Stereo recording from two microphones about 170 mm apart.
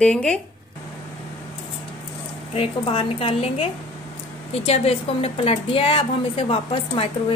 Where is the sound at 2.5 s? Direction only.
30° left (ahead or behind).